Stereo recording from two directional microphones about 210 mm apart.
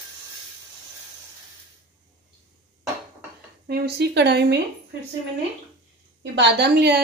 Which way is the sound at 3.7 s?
50° right (ahead or behind).